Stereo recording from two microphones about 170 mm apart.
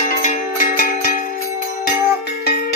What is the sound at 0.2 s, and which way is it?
Music, 50° left (ahead or behind).